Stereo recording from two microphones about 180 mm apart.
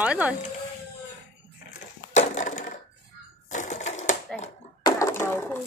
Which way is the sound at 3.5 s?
40° left (ahead or behind).